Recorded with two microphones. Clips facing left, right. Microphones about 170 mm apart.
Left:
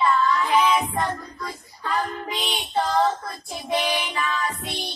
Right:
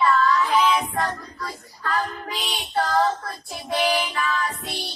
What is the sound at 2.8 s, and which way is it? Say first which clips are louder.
Child singing: even; 25° left (ahead or behind).